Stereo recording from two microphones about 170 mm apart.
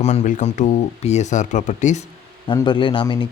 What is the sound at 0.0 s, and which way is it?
Speech, 40° left (ahead or behind).